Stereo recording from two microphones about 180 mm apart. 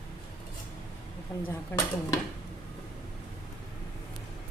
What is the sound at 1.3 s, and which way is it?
Speech, 15° left (ahead or behind).